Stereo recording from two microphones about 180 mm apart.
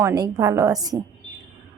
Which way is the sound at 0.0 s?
20° right (ahead or behind).